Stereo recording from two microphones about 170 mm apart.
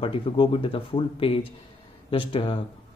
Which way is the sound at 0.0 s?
30° left (ahead or behind).